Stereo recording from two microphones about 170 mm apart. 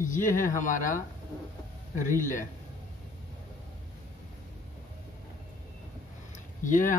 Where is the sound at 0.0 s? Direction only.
50° left (ahead or behind).